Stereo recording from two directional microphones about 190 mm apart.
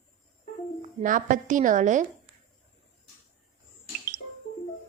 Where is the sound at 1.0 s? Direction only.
45° right (ahead or behind).